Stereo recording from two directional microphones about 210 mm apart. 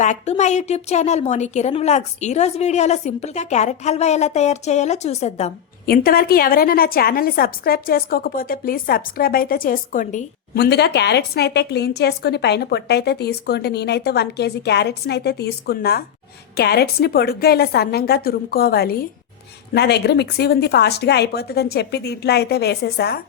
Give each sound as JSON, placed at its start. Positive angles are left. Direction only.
{"t": 0.0, "sound": "a woman's voice", "side_deg": 35}
{"t": 5.8, "sound": "a woman's voice", "side_deg": 45}
{"t": 10.6, "sound": "a woman's voice", "side_deg": 50}